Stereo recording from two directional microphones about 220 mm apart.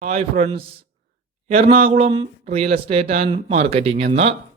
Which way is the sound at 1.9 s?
25° right (ahead or behind).